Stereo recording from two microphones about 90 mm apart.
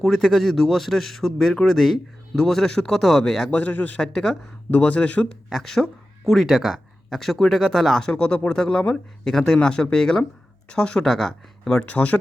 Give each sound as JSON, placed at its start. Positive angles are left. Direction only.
{"t": 0.0, "sound": "a man's voice", "side_deg": 0}
{"t": 3.5, "sound": "speech", "side_deg": 20}
{"t": 4.0, "sound": "speech", "side_deg": 5}
{"t": 5.5, "sound": "a man's voice", "side_deg": 0}